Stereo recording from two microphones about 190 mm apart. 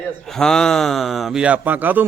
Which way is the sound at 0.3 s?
5° left (ahead or behind).